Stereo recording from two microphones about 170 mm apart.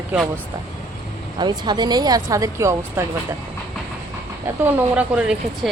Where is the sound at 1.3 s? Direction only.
25° right (ahead or behind).